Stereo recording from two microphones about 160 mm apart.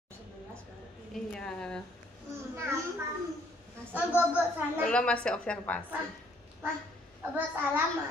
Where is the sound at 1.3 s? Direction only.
5° left (ahead or behind).